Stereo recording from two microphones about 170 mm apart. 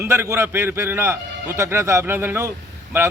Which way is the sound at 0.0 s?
15° right (ahead or behind).